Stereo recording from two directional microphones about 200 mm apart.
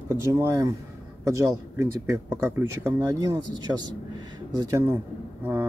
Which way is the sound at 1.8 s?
10° right (ahead or behind).